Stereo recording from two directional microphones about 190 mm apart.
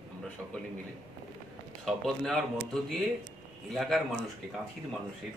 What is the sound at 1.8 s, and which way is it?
Speech, centre (ahead or behind).